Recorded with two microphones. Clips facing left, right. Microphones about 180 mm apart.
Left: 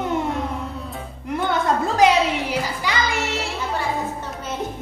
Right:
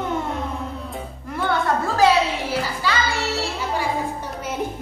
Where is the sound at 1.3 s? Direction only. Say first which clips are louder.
Left 1 dB; 20° left (ahead or behind).